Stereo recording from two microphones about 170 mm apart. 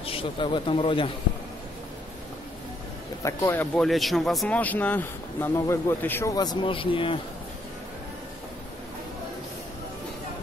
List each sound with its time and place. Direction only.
0.0 s a man's voice: 30° left (ahead or behind)
3.2 s speech: 15° left (ahead or behind); by 7.2 s 30° left (ahead or behind)